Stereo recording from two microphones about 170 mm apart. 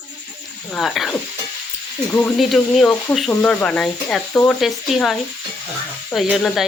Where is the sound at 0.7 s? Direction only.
Centre (ahead or behind).